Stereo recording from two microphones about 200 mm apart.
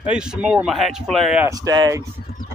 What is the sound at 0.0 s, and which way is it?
Speech, 5° right (ahead or behind).